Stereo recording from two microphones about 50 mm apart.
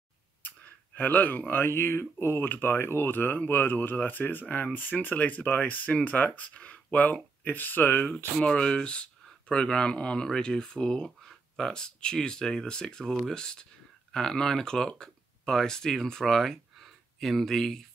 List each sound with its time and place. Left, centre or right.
0.9 s speech: left
1.5 s speech: left
8.4 s speech: centre